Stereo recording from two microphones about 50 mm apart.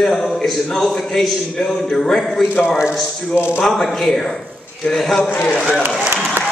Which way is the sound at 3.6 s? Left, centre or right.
Centre.